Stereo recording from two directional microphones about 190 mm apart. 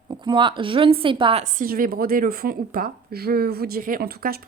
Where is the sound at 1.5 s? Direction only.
50° right (ahead or behind).